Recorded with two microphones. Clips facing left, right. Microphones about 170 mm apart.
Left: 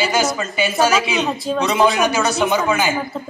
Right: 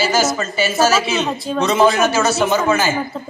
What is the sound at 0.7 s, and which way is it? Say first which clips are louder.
Speech: right 1 dB; 5° right (ahead or behind).